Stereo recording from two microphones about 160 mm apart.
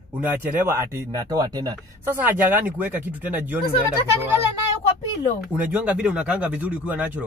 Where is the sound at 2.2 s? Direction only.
10° right (ahead or behind).